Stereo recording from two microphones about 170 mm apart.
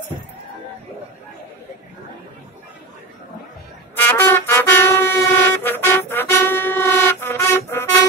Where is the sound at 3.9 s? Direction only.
15° left (ahead or behind).